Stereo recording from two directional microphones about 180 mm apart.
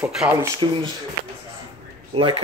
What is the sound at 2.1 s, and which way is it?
Speech, 30° right (ahead or behind).